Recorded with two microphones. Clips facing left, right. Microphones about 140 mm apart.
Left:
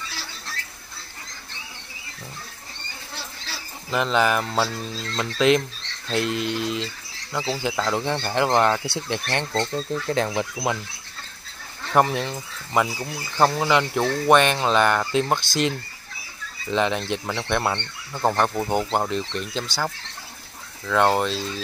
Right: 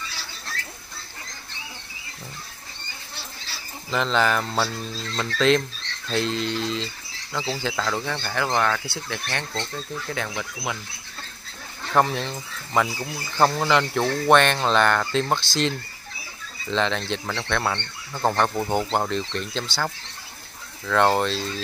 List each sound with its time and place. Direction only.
3.9 s speech: 10° left (ahead or behind); by 10.8 s 30° left (ahead or behind)
11.9 s speech: 10° left (ahead or behind)
16.7 s speech: 10° left (ahead or behind)
20.8 s speech: 5° left (ahead or behind)